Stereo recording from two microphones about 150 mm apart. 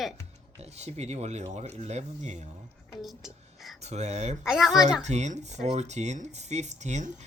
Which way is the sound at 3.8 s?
50° right (ahead or behind).